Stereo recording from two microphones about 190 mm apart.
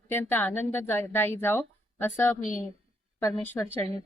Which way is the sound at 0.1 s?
10° left (ahead or behind).